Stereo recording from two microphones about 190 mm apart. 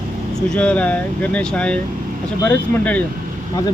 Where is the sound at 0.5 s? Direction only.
5° left (ahead or behind).